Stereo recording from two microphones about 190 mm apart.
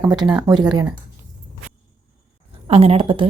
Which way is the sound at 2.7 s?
30° right (ahead or behind).